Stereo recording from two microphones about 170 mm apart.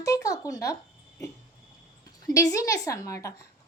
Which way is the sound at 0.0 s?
20° left (ahead or behind).